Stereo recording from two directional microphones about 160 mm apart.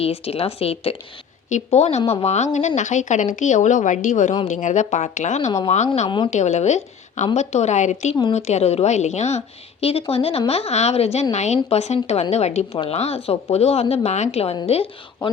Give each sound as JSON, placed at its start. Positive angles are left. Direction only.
{"t": 0.0, "sound": "a woman's voice", "side_deg": 40}
{"t": 6.1, "sound": "a woman's voice", "side_deg": 30}
{"t": 6.3, "sound": "a woman's voice", "side_deg": 45}